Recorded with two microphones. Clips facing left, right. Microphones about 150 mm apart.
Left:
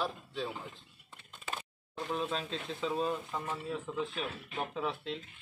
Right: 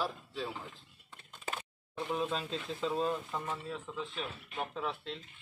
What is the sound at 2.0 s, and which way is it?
A man's voice, centre (ahead or behind).